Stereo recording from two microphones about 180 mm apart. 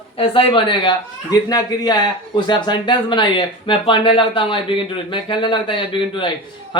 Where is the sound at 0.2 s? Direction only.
30° left (ahead or behind).